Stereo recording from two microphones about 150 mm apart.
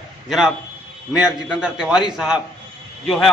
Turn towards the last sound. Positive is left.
turn(degrees=0)  # may be behind; listen again after turning